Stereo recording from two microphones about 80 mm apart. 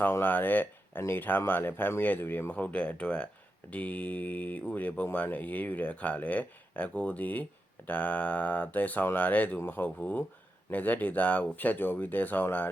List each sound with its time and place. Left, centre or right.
0.0 s speech: left